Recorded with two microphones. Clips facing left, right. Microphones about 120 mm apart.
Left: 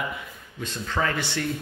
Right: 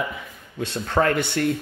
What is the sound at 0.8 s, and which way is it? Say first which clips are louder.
Speech: right 6 dB; 50° right (ahead or behind).